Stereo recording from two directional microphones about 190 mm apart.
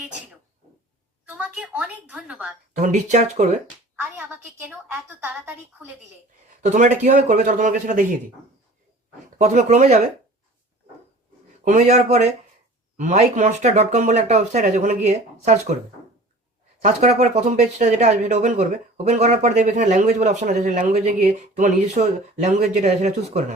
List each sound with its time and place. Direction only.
1.3 s a woman's voice: 5° right (ahead or behind)
2.7 s speech: 40° right (ahead or behind)
4.2 s a woman's voice: 10° right (ahead or behind)
6.6 s speech: 40° right (ahead or behind)
9.4 s speech: 40° right (ahead or behind)
11.6 s speech: 40° right (ahead or behind)
16.8 s speech: 40° right (ahead or behind)